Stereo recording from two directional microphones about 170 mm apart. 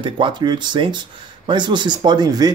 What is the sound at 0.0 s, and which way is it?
Speech, 30° right (ahead or behind).